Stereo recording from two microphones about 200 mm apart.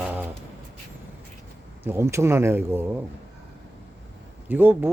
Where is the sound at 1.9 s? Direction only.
15° right (ahead or behind).